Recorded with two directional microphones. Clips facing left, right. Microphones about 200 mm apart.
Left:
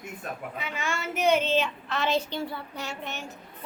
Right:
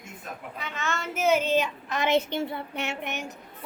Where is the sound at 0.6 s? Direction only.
10° left (ahead or behind).